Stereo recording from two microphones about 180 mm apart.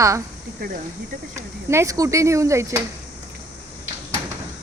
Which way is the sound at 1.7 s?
15° right (ahead or behind).